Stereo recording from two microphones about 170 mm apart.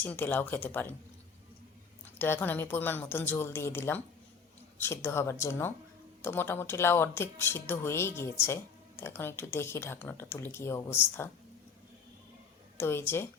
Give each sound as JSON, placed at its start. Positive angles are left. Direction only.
{"t": 0.0, "sound": "speech", "side_deg": 10}
{"t": 2.1, "sound": "speech", "side_deg": 15}
{"t": 12.7, "sound": "speech", "side_deg": 15}